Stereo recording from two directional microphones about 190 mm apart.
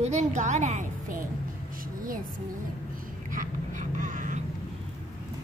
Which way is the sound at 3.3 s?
45° right (ahead or behind).